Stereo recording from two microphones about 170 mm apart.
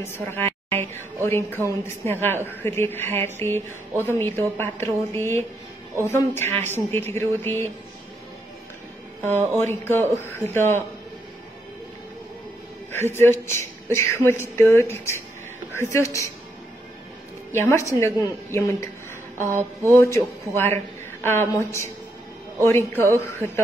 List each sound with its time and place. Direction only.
0.0 s a woman's voice: 15° left (ahead or behind)
9.6 s a woman's voice: 15° left (ahead or behind)
12.9 s a woman's voice: 15° left (ahead or behind)
17.5 s a woman's voice: 15° left (ahead or behind)
19.9 s a woman's voice: 15° left (ahead or behind)